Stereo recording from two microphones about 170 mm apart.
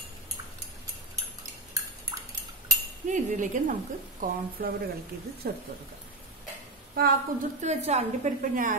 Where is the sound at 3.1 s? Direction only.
45° right (ahead or behind).